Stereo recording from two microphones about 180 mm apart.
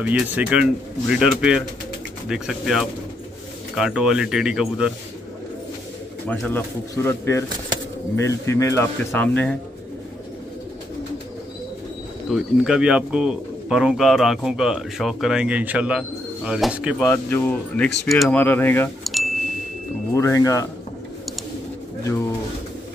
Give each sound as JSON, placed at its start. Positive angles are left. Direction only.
{"t": 0.0, "sound": "speech", "side_deg": -10}
{"t": 6.2, "sound": "speech", "side_deg": 10}
{"t": 12.3, "sound": "speech", "side_deg": -5}
{"t": 17.1, "sound": "speech", "side_deg": 10}
{"t": 20.1, "sound": "speech", "side_deg": 15}